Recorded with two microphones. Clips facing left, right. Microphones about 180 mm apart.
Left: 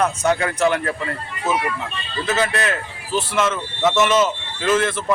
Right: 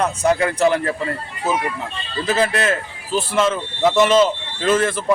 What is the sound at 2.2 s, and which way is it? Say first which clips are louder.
Speech: right 2 dB; 30° right (ahead or behind).